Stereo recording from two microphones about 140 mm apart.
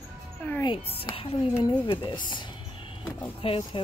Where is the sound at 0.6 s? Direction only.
40° left (ahead or behind).